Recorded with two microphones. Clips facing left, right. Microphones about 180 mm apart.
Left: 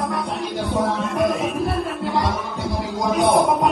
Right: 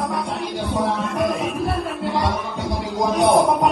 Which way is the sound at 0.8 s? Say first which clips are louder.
Left 1 dB; centre (ahead or behind).